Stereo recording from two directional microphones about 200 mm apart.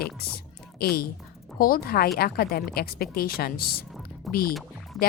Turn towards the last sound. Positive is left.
turn(degrees=0)  # may be behind; listen again after turning